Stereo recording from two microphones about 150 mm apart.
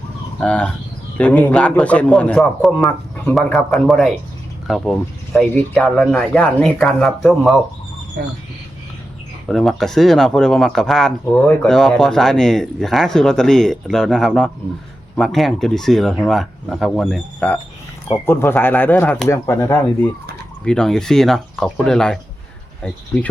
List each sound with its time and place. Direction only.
0.3 s a man's voice: 5° left (ahead or behind)
9.5 s a man's voice: centre (ahead or behind); by 19.8 s 20° left (ahead or behind)
20.7 s speech: 5° left (ahead or behind)